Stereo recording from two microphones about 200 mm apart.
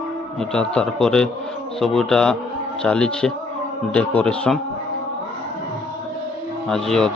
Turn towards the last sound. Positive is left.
turn(degrees=5)  # may be behind; listen again after turning